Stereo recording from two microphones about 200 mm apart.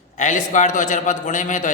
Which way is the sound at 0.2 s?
40° left (ahead or behind).